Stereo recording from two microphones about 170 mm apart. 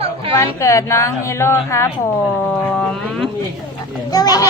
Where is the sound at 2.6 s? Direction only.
5° left (ahead or behind).